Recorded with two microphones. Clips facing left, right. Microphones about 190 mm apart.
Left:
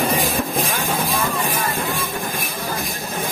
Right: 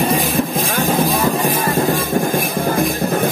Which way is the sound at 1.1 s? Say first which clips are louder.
Right 6 dB; 40° right (ahead or behind).